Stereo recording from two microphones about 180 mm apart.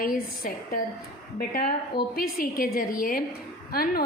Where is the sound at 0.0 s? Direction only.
55° left (ahead or behind).